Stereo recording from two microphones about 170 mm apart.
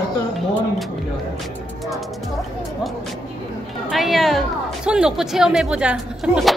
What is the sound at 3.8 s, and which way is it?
Speech, centre (ahead or behind).